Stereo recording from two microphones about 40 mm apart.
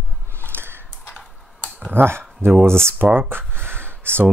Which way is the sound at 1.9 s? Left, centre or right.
Right.